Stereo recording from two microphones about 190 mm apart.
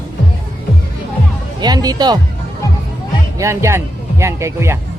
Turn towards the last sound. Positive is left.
turn(degrees=-15)  # may be behind; listen again after turning